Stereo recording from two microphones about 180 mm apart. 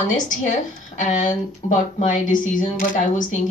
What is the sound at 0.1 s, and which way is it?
A woman's voice, 45° left (ahead or behind).